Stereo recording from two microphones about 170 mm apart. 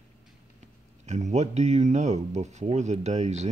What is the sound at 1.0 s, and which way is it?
Speech, 45° right (ahead or behind).